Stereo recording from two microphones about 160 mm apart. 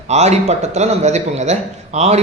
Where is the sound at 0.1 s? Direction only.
45° right (ahead or behind).